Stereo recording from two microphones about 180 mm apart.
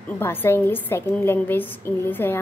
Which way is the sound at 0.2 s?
10° left (ahead or behind).